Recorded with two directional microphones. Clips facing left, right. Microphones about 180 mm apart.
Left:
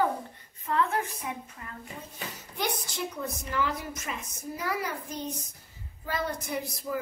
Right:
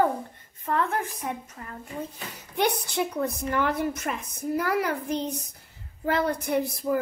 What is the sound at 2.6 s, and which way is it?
A woman's voice, 65° right (ahead or behind).